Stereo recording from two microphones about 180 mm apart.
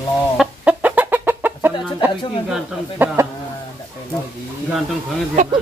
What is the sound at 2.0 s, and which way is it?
A woman's voice, 10° right (ahead or behind).